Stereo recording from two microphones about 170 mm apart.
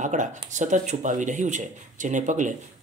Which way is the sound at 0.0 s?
45° right (ahead or behind).